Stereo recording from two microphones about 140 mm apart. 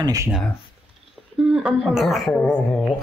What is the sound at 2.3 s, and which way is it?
Speech, 10° left (ahead or behind).